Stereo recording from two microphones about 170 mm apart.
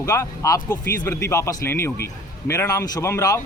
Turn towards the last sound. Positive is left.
turn(degrees=15)  # may be behind; listen again after turning